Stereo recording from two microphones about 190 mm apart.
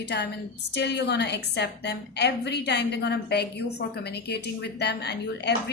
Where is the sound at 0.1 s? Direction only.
60° left (ahead or behind).